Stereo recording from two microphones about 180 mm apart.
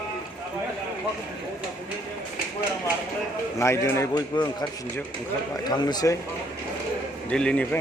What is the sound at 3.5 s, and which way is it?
A man's voice, 15° left (ahead or behind).